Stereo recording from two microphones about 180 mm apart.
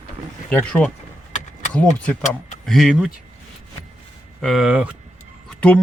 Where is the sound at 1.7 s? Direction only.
5° left (ahead or behind).